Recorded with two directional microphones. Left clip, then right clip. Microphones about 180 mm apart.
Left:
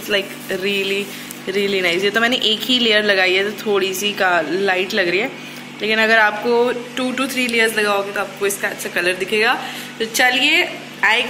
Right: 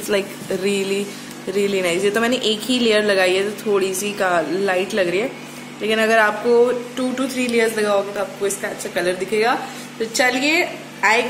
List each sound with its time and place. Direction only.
0.7 s speech: 30° right (ahead or behind)
1.5 s a woman's voice: 10° right (ahead or behind)